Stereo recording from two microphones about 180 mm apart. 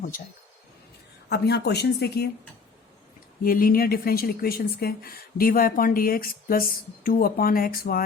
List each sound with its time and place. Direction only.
1.3 s speech: 65° left (ahead or behind)
3.4 s speech: 55° left (ahead or behind)